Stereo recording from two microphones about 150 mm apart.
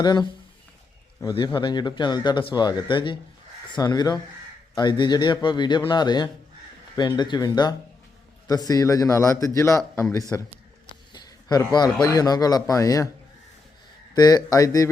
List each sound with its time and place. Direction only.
0.0 s speech: 30° left (ahead or behind)
1.5 s a man's voice: 30° left (ahead or behind)
14.2 s speech: 25° left (ahead or behind)